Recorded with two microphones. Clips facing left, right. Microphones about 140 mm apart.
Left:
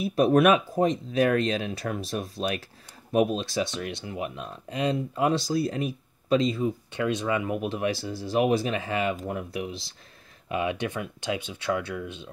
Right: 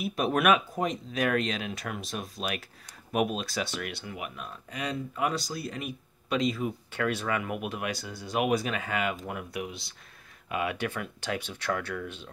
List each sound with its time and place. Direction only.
0.0 s speech: 35° left (ahead or behind); by 12.3 s 15° left (ahead or behind)